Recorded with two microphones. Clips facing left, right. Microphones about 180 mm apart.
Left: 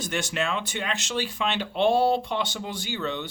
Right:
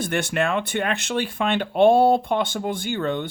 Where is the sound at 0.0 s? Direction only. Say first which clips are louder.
Right 5 dB; 55° right (ahead or behind).